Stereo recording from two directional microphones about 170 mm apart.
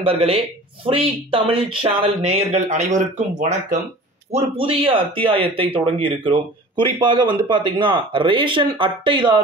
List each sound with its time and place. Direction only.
0.0 s speech: 35° right (ahead or behind)
4.3 s speech: 35° right (ahead or behind)